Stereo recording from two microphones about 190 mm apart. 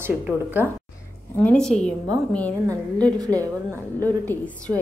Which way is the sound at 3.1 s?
20° right (ahead or behind).